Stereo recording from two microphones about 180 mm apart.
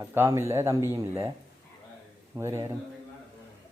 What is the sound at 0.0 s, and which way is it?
Speech, 15° right (ahead or behind).